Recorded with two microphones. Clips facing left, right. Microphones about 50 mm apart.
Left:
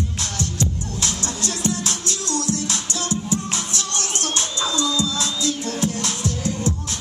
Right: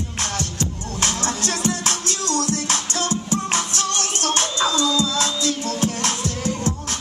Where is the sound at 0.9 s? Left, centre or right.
Right.